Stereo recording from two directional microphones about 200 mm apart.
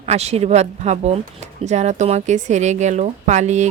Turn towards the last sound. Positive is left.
turn(degrees=-35)  # may be behind; listen again after turning